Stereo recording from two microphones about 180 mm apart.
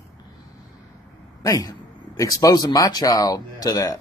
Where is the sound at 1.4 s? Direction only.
20° left (ahead or behind).